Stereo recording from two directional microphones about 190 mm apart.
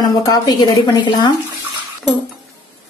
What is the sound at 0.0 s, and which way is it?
A woman's voice, 20° left (ahead or behind).